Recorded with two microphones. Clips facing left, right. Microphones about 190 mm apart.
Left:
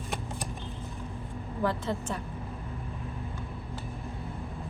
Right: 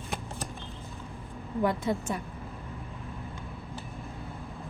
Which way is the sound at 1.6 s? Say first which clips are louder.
Right 3 dB; 15° right (ahead or behind).